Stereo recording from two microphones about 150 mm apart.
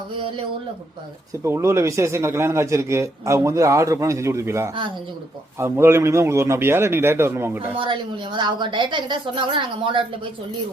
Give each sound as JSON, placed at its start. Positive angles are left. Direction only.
{"t": 1.5, "sound": "a man's voice", "side_deg": -20}
{"t": 7.8, "sound": "a woman's voice", "side_deg": -35}